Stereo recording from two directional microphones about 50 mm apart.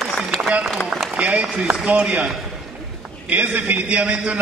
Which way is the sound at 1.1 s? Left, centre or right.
Right.